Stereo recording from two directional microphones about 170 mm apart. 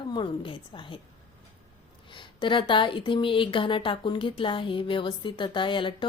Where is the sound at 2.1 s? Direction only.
30° left (ahead or behind).